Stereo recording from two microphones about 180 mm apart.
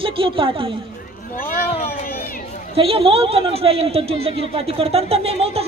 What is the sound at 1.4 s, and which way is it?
Speech, 50° left (ahead or behind).